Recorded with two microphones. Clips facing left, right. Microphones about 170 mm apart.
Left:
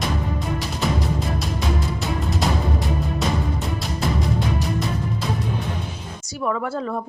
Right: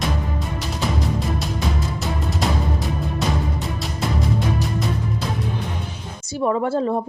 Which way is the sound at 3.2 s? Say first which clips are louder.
Even; centre (ahead or behind).